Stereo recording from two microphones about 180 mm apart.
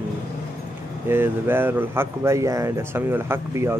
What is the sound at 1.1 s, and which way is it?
Speech, 10° right (ahead or behind).